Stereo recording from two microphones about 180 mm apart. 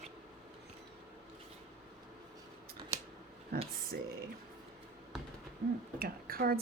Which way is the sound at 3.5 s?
60° right (ahead or behind).